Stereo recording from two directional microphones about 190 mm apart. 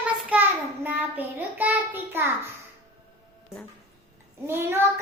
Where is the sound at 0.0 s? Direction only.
5° right (ahead or behind).